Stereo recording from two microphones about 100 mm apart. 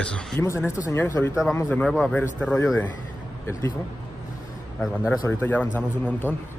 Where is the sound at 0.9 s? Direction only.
30° left (ahead or behind).